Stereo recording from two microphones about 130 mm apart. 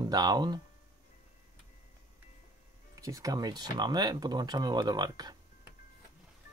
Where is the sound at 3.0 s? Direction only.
25° right (ahead or behind).